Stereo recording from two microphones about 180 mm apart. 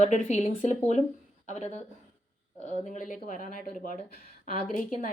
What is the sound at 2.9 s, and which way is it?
Speech, 45° left (ahead or behind).